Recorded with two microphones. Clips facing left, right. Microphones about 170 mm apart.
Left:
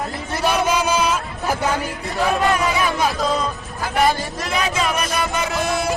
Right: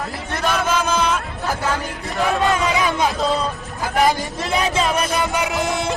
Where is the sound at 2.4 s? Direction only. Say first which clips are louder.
Even; 20° right (ahead or behind).